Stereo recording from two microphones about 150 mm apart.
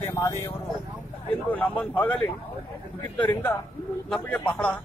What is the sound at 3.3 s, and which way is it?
Speech, 15° left (ahead or behind).